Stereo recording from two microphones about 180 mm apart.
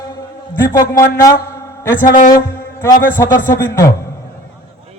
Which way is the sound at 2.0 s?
50° left (ahead or behind).